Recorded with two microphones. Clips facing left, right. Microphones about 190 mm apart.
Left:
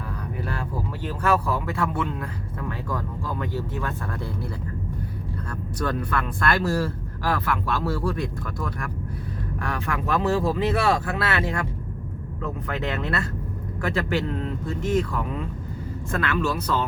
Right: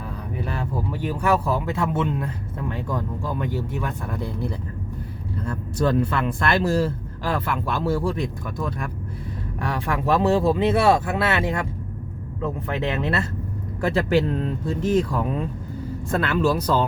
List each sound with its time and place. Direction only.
0.4 s speech: 20° right (ahead or behind)
13.8 s speech: 30° right (ahead or behind)